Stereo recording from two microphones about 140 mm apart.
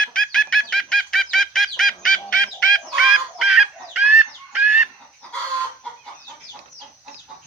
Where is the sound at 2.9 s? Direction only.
Centre (ahead or behind).